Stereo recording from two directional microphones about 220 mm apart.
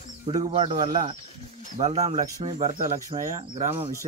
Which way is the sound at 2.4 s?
35° right (ahead or behind).